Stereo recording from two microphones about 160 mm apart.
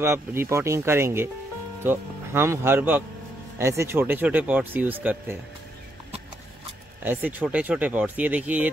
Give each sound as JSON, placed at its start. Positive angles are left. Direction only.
{"t": 0.0, "sound": "speech", "side_deg": -15}
{"t": 7.1, "sound": "speech", "side_deg": -10}